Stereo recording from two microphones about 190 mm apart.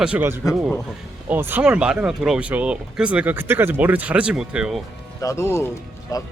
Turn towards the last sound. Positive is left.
turn(degrees=15)  # may be behind; listen again after turning